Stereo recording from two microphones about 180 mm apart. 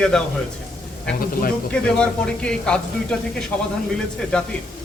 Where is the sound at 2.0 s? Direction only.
5° left (ahead or behind).